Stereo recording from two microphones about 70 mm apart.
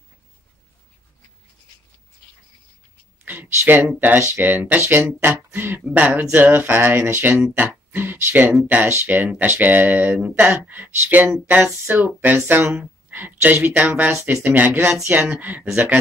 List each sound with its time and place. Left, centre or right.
3.3 s speech: right